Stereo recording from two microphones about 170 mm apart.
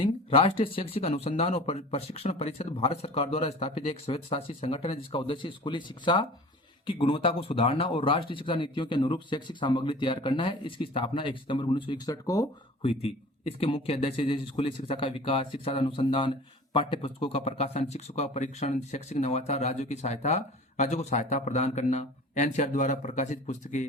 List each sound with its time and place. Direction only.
0.0 s speech: 30° left (ahead or behind)
12.8 s speech: 35° left (ahead or behind)